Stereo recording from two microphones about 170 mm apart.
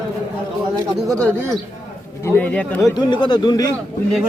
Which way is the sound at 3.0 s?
30° left (ahead or behind).